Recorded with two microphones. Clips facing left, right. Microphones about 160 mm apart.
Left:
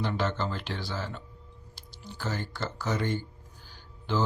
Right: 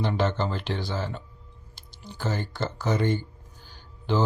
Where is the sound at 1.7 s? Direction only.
20° right (ahead or behind).